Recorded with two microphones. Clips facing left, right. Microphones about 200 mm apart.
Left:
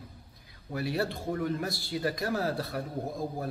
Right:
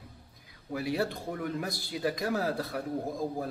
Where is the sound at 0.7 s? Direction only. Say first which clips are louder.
Even; 15° right (ahead or behind).